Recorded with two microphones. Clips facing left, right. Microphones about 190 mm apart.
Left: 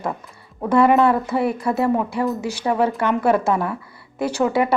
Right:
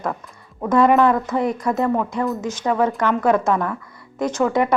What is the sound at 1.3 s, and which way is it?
A woman's voice, 10° left (ahead or behind).